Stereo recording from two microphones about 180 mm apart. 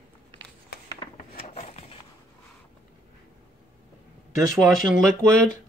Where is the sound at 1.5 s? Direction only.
35° left (ahead or behind).